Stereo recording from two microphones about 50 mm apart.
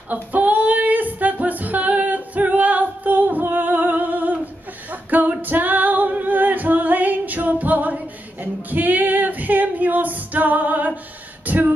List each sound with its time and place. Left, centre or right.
0.1 s female singing: right
4.9 s music: right
5.4 s female singing: right
11.4 s a sound: right